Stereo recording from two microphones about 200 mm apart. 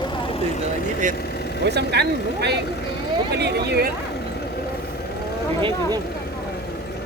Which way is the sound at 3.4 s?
55° right (ahead or behind).